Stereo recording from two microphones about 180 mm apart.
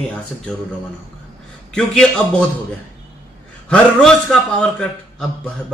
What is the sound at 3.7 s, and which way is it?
Speech, 5° left (ahead or behind).